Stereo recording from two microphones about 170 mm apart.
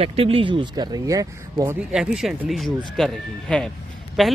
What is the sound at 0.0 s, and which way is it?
Speech, 35° right (ahead or behind).